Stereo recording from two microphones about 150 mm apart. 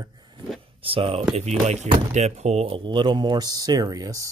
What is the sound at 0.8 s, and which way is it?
Speech, 40° right (ahead or behind).